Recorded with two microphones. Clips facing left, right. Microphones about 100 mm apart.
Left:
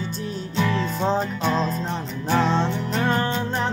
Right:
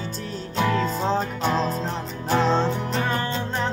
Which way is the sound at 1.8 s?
5° right (ahead or behind).